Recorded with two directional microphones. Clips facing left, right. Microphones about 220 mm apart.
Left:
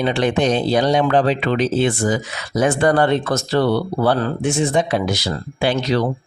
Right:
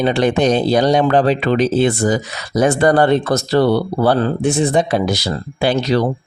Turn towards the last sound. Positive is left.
turn(degrees=-35)  # may be behind; listen again after turning